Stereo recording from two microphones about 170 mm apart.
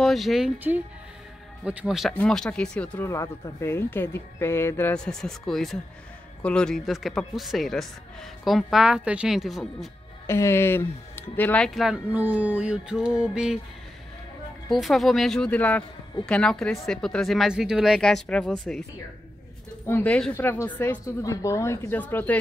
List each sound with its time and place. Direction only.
0.0 s speech: centre (ahead or behind)
1.6 s speech: 5° right (ahead or behind)
10.2 s speech: 15° left (ahead or behind); by 13.6 s 5° right (ahead or behind)
14.7 s speech: centre (ahead or behind)
19.9 s speech: 10° left (ahead or behind)